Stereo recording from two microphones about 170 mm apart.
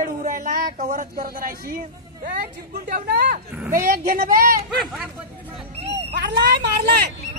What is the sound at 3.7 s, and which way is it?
Speech, 55° right (ahead or behind).